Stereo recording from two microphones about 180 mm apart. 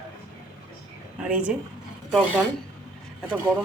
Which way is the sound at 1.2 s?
5° right (ahead or behind).